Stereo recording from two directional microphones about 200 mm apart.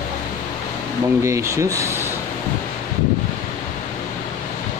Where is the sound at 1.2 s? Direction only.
15° right (ahead or behind).